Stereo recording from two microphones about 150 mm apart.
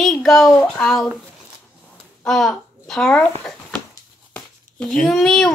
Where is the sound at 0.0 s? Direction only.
Centre (ahead or behind).